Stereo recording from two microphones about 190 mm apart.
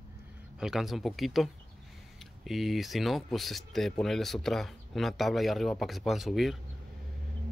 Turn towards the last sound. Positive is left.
turn(degrees=0)  # may be behind; listen again after turning